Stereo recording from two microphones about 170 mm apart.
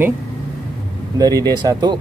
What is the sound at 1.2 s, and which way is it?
Speech, 20° right (ahead or behind).